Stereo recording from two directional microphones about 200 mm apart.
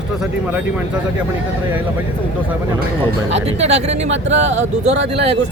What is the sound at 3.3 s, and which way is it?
Speech, 35° right (ahead or behind).